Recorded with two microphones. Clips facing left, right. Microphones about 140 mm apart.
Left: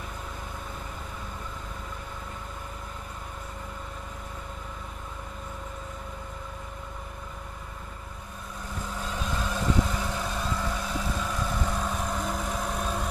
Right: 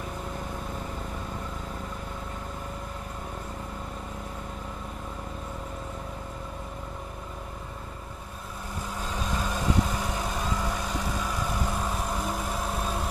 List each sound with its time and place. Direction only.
9.1 s vehicle: 10° right (ahead or behind)